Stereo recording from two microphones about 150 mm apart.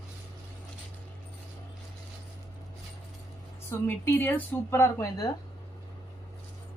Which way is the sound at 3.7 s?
15° left (ahead or behind).